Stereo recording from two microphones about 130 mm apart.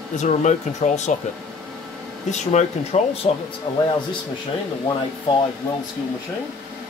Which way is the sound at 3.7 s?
40° left (ahead or behind).